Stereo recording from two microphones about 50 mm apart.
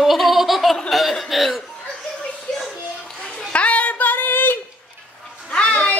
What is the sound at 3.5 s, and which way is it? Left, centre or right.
Female singing, left.